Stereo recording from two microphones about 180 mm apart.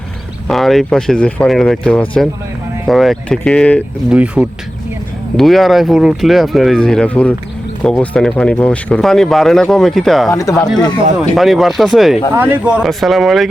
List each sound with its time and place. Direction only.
0.4 s speech: centre (ahead or behind)
4.1 s speech: 5° right (ahead or behind)
10.3 s speech: 20° left (ahead or behind)
10.7 s speech: 5° left (ahead or behind)